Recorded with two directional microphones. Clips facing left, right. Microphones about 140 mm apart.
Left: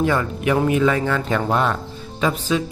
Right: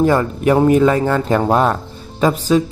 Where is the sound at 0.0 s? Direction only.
40° right (ahead or behind).